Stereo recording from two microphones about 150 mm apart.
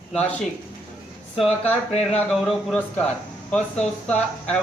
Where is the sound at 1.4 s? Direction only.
45° left (ahead or behind).